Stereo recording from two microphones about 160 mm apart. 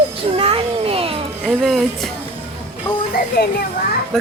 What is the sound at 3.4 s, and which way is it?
Speech, 75° left (ahead or behind).